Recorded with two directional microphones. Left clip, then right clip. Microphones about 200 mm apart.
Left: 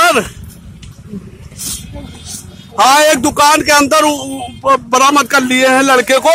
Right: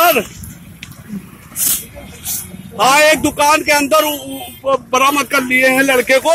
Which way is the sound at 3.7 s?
20° left (ahead or behind).